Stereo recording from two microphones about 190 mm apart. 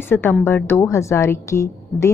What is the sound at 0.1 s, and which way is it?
A woman's voice, 10° left (ahead or behind).